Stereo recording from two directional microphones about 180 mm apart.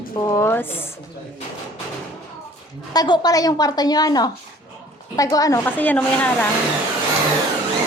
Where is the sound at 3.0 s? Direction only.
25° left (ahead or behind); by 6.4 s 10° left (ahead or behind).